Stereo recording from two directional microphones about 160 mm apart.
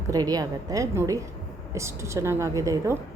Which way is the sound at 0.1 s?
25° right (ahead or behind).